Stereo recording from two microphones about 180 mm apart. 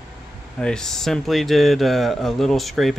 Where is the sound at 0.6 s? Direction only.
5° left (ahead or behind).